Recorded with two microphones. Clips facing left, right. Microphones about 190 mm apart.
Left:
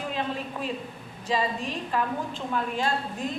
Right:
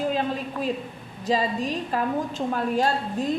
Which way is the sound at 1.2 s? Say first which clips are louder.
Right 4 dB; 40° right (ahead or behind).